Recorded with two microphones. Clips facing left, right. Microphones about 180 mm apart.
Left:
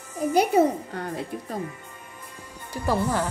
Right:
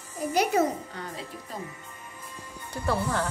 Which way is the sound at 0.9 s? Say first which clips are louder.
Left 7 dB; 55° left (ahead or behind).